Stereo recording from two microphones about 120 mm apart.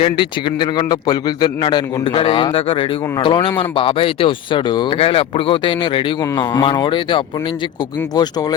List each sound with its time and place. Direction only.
0.0 s a man's voice: 40° left (ahead or behind)
4.9 s a man's voice: 55° left (ahead or behind)
6.3 s speech: 35° left (ahead or behind)
8.1 s speech: 35° left (ahead or behind)